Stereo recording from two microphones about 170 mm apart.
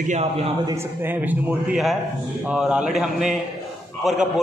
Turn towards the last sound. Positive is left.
turn(degrees=0)  # may be behind; listen again after turning